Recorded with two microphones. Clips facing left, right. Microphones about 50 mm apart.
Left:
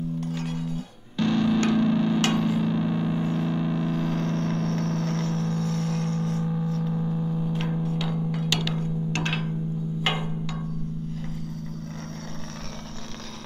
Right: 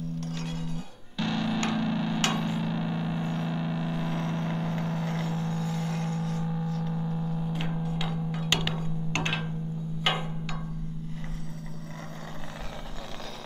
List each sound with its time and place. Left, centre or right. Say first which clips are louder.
0.2 s music: left 4 dB; centre
7.8 s music: left 4 dB; centre
8.5 s a sound: right 1 dB; centre